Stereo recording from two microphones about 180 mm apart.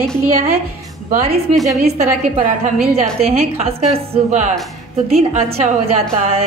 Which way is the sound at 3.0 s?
35° right (ahead or behind).